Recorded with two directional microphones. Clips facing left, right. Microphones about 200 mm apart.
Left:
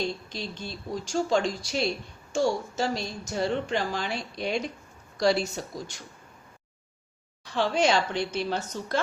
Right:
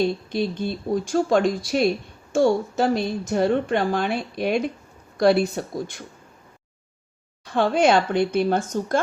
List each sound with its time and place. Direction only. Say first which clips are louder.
0.0 s a woman's voice: right 9 dB; 55° right (ahead or behind)
7.4 s speech: right 6 dB; 55° right (ahead or behind)